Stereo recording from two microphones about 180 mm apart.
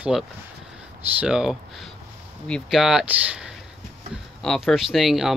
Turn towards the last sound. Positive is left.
turn(degrees=0)  # may be behind; listen again after turning